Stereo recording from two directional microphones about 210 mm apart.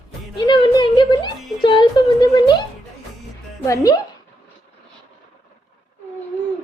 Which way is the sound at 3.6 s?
15° left (ahead or behind).